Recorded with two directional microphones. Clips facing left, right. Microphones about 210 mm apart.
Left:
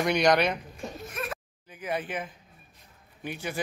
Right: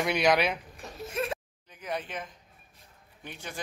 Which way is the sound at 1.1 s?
25° right (ahead or behind).